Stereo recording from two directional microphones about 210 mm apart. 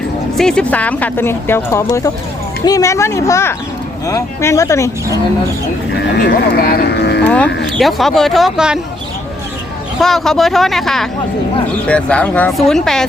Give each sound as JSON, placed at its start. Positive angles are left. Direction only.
{"t": 0.3, "sound": "speech", "side_deg": 5}
{"t": 6.2, "sound": "speech", "side_deg": 50}
{"t": 7.3, "sound": "speech", "side_deg": 5}
{"t": 10.0, "sound": "speech", "side_deg": 0}